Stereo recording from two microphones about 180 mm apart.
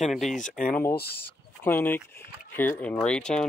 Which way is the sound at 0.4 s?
45° left (ahead or behind).